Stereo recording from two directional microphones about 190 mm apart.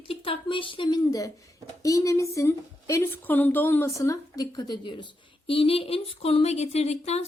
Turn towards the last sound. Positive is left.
turn(degrees=35)  # may be behind; listen again after turning